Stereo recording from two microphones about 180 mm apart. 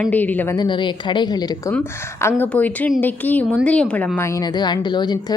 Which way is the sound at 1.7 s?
10° left (ahead or behind).